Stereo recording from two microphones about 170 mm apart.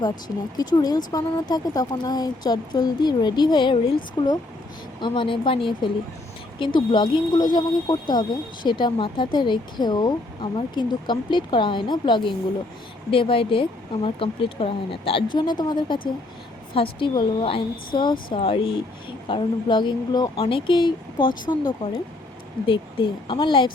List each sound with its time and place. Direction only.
0.5 s speech: 25° left (ahead or behind)
22.6 s speech: 30° left (ahead or behind)